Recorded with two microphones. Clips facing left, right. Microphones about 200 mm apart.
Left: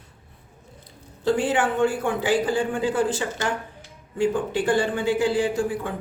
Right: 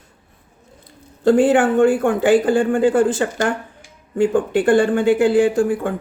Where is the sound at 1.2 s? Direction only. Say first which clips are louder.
Right 8 dB; 50° right (ahead or behind).